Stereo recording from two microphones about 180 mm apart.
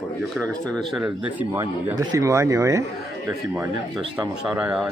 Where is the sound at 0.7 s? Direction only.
Centre (ahead or behind); by 2.8 s 20° right (ahead or behind).